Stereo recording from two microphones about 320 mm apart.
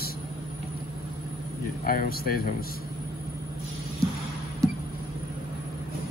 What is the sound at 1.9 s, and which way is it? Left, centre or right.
Speech, left.